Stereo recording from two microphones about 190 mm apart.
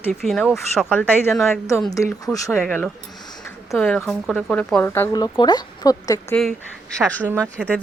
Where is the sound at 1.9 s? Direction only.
15° left (ahead or behind).